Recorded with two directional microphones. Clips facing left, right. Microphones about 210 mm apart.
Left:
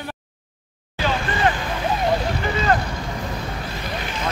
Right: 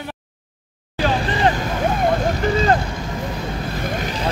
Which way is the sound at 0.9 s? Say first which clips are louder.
Right 3 dB; 35° right (ahead or behind).